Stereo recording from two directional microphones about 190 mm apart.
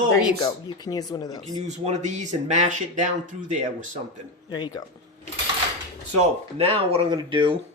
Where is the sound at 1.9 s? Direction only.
40° right (ahead or behind).